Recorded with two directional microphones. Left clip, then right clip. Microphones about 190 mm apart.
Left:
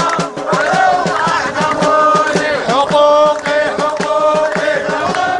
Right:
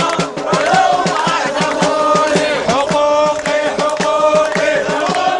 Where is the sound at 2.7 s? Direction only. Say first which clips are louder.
Left 5 dB; 35° left (ahead or behind).